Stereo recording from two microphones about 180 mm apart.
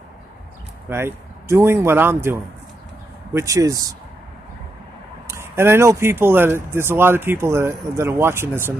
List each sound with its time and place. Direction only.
0.8 s speech: 15° right (ahead or behind)
3.3 s speech: 20° right (ahead or behind)
5.3 s speech: 15° right (ahead or behind)